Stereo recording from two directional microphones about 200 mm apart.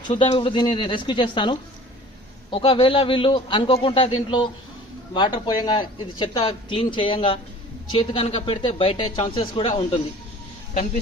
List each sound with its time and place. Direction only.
0.1 s speech: 25° left (ahead or behind)